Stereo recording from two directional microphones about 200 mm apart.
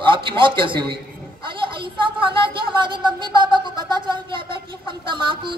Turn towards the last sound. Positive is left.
turn(degrees=-25)  # may be behind; listen again after turning